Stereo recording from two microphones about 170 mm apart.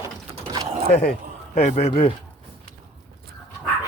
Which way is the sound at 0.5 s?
30° right (ahead or behind).